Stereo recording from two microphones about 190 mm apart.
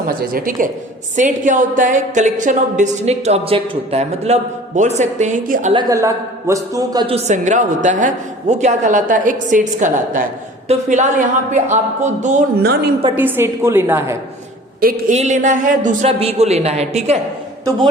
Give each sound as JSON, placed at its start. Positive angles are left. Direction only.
{"t": 0.1, "sound": "a woman's voice", "side_deg": -50}
{"t": 5.7, "sound": "a man's voice", "side_deg": -15}
{"t": 7.3, "sound": "a woman's voice", "side_deg": -40}
{"t": 13.1, "sound": "a man's voice", "side_deg": -10}
{"t": 14.8, "sound": "a woman's voice", "side_deg": -50}
{"t": 15.1, "sound": "a woman's voice", "side_deg": -35}